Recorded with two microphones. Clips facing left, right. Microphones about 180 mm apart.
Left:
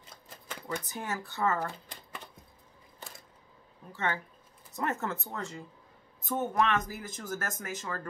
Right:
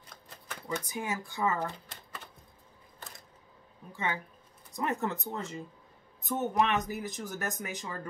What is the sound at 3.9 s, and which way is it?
Speech, 15° right (ahead or behind).